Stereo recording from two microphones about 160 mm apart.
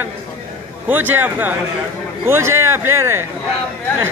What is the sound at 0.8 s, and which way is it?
Speech, 10° right (ahead or behind).